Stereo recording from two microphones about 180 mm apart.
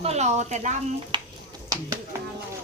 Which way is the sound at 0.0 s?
35° right (ahead or behind).